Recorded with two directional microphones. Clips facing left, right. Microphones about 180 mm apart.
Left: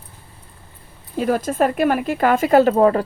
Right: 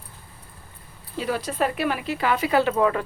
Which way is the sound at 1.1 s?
50° left (ahead or behind).